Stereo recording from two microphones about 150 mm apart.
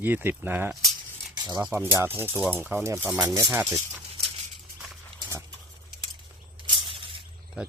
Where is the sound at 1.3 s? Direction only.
30° right (ahead or behind).